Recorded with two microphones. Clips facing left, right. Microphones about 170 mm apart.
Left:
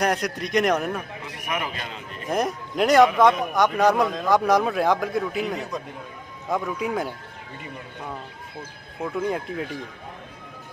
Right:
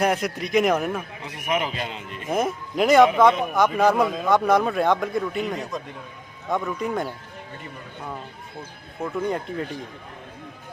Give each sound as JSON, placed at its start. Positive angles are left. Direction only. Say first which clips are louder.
{"t": 0.0, "sound": "speech", "louder": "right 1 dB", "side_deg": -5}
{"t": 1.5, "sound": "speech", "louder": "right 5 dB", "side_deg": -25}
{"t": 2.3, "sound": "speech", "louder": "right 1 dB", "side_deg": 0}
{"t": 9.0, "sound": "speech", "louder": "even", "side_deg": 0}